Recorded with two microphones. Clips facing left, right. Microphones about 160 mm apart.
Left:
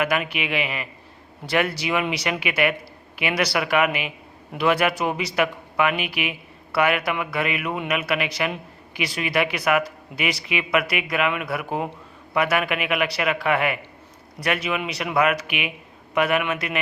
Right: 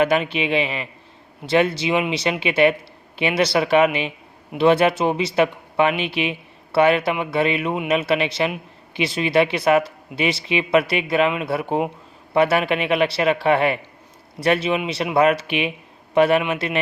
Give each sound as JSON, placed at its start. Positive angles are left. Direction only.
{"t": 0.0, "sound": "speech", "side_deg": -30}